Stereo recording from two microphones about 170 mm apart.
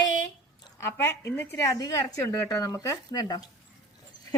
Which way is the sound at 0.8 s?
15° left (ahead or behind).